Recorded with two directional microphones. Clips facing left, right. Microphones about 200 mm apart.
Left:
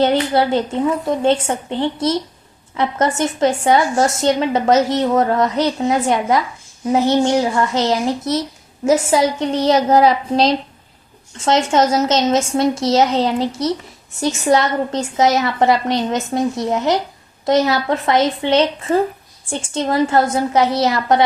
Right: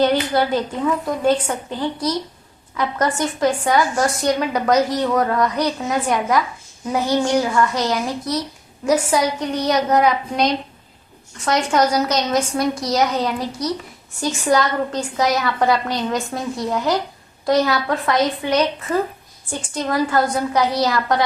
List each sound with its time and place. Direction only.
0.0 s a woman's voice: 25° left (ahead or behind)